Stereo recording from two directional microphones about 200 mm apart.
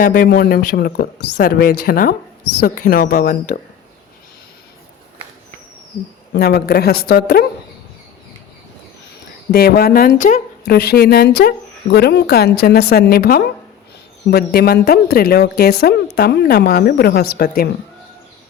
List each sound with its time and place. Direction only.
0.0 s a woman's voice: 45° left (ahead or behind)
6.3 s a woman's voice: 55° left (ahead or behind)
9.5 s a woman's voice: 50° left (ahead or behind)